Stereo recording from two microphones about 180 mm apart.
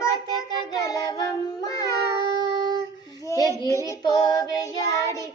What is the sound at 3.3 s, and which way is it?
Child singing, 20° left (ahead or behind).